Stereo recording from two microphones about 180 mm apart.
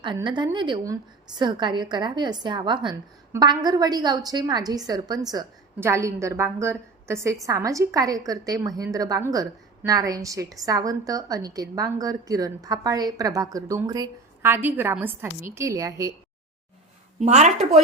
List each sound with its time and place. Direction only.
0.0 s a woman's voice: 25° right (ahead or behind)
17.2 s speech: 40° right (ahead or behind)